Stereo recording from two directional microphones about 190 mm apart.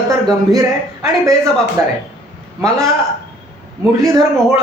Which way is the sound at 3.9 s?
15° right (ahead or behind).